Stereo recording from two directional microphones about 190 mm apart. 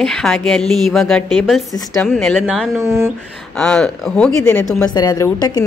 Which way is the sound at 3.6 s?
5° left (ahead or behind).